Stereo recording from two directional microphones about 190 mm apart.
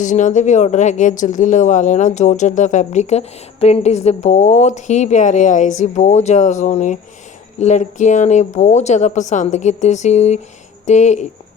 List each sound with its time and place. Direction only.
0.0 s speech: 40° left (ahead or behind)